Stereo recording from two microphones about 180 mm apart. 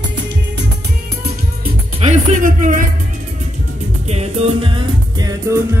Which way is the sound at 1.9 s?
40° right (ahead or behind).